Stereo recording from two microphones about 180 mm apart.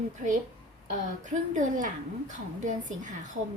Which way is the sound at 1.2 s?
45° right (ahead or behind).